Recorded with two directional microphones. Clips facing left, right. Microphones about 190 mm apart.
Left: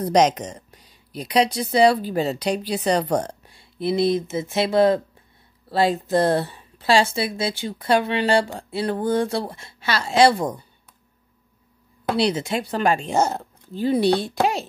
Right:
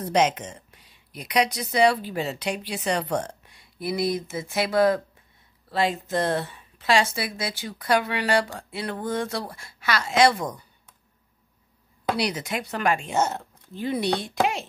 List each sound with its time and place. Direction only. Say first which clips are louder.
0.0 s speech: left 4 dB; 40° left (ahead or behind)
12.2 s speech: left 10 dB; 25° left (ahead or behind)